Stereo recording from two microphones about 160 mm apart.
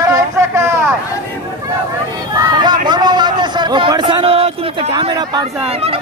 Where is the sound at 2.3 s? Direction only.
25° right (ahead or behind).